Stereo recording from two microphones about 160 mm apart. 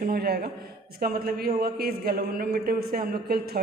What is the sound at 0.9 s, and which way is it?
A man's voice, 70° right (ahead or behind).